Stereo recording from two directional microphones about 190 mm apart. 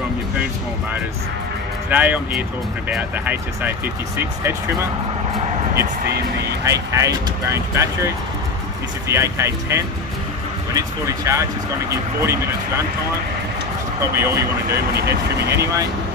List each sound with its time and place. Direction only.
1.9 s speech: 10° right (ahead or behind)
6.6 s speech: 15° right (ahead or behind)
14.1 s speech: 15° right (ahead or behind)
15.0 s speech: 60° right (ahead or behind)
15.5 s speech: 15° right (ahead or behind)